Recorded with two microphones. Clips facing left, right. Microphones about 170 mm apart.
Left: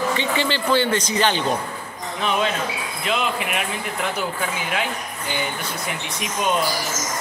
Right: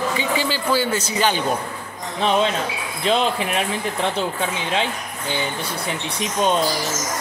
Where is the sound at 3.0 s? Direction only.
30° right (ahead or behind).